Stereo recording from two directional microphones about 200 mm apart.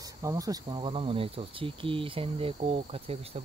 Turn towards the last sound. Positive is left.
turn(degrees=-30)  # may be behind; listen again after turning